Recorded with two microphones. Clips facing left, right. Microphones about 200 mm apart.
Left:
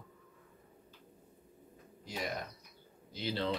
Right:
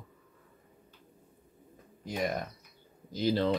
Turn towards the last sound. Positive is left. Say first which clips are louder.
# right 8 dB
turn(degrees=-45)  # may be behind; listen again after turning